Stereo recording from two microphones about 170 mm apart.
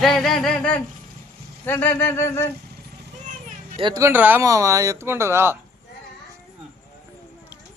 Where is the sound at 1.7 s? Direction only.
10° left (ahead or behind).